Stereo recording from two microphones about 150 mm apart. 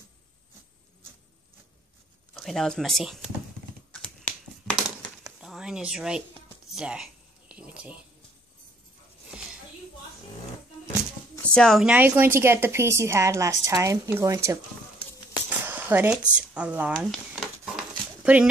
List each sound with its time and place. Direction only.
2.3 s speech: centre (ahead or behind)
4.0 s finger snapping: 10° left (ahead or behind)
5.4 s speech: 5° right (ahead or behind)
6.7 s a sound: 5° right (ahead or behind)
11.4 s speech: 5° left (ahead or behind)
11.8 s a woman's voice: 10° right (ahead or behind)
15.6 s a sound: 10° right (ahead or behind)
16.3 s speech: 10° right (ahead or behind)
17.0 s a sound: centre (ahead or behind)